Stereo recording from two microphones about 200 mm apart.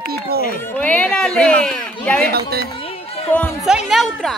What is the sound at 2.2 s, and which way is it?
Speech, 50° right (ahead or behind).